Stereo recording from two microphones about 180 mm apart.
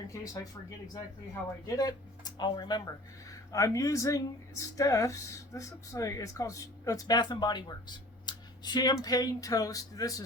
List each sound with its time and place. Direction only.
1.6 s speech: 20° left (ahead or behind)